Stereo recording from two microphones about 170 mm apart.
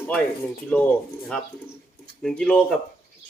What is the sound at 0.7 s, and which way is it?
Speech, 10° left (ahead or behind).